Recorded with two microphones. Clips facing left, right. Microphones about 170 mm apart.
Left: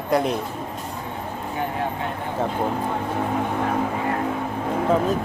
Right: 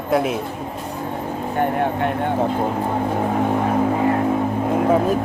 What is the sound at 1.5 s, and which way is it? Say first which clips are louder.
Speech: right 7 dB; 60° right (ahead or behind).